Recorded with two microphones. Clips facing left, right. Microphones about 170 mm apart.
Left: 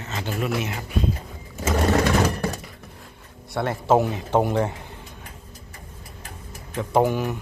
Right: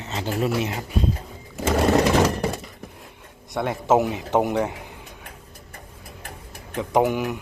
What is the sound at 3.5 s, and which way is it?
Speech, 15° right (ahead or behind).